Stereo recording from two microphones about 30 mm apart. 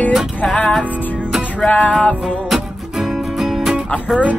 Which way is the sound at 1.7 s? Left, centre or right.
Left.